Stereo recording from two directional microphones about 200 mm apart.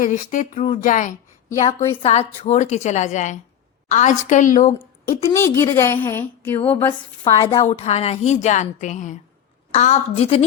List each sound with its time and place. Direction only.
0.0 s a woman's voice: 40° left (ahead or behind)
1.9 s a woman's voice: 30° left (ahead or behind)
5.3 s a woman's voice: 15° left (ahead or behind)
7.5 s a woman's voice: 30° left (ahead or behind)